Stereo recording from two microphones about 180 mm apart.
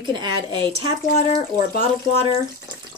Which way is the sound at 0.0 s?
25° right (ahead or behind).